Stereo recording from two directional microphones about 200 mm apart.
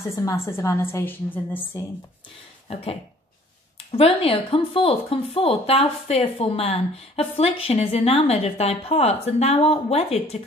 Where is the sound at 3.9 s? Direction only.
30° left (ahead or behind).